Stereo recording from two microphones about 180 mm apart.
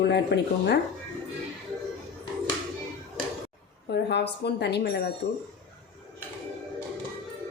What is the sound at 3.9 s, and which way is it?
Speech, 70° left (ahead or behind).